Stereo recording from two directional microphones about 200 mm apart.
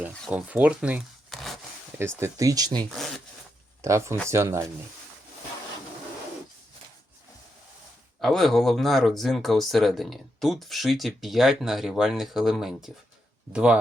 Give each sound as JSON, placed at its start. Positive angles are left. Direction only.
{"t": 0.3, "sound": "speech", "side_deg": -5}
{"t": 2.0, "sound": "speech", "side_deg": -15}
{"t": 8.2, "sound": "speech", "side_deg": 0}